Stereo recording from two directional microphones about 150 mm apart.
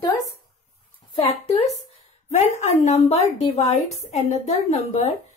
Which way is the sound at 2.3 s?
50° left (ahead or behind).